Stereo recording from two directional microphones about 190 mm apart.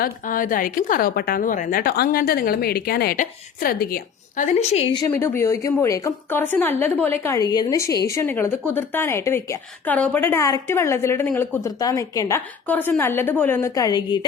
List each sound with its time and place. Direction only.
0.0 s a woman's voice: 45° left (ahead or behind)
5.1 s a woman's voice: 15° left (ahead or behind)